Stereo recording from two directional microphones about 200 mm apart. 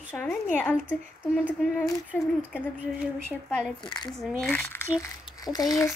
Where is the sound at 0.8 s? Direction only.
5° right (ahead or behind).